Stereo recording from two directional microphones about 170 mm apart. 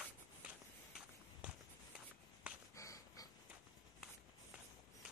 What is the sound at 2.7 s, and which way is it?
Dog, 20° left (ahead or behind).